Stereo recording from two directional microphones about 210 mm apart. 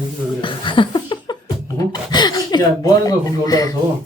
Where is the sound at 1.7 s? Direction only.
20° left (ahead or behind).